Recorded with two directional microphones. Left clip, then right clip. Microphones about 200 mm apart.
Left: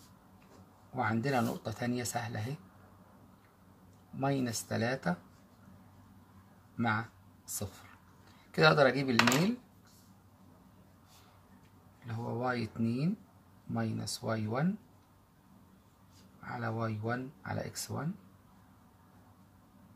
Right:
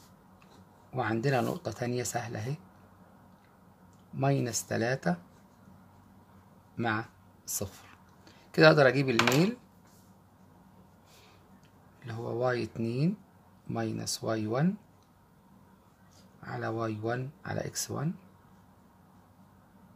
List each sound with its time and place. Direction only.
0.9 s speech: 40° right (ahead or behind)
4.2 s speech: 35° right (ahead or behind)
6.8 s speech: 35° right (ahead or behind)
12.1 s speech: 40° right (ahead or behind)
16.4 s speech: 40° right (ahead or behind)